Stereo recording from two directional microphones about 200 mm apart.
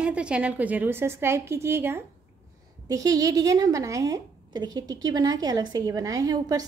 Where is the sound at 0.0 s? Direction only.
5° right (ahead or behind).